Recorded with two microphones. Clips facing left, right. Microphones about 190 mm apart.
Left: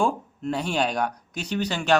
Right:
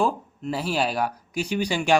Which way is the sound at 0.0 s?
5° right (ahead or behind).